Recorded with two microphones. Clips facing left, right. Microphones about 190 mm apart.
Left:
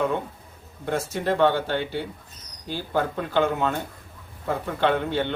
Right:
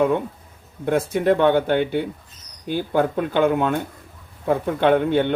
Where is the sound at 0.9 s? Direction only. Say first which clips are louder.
Right 7 dB; 55° right (ahead or behind).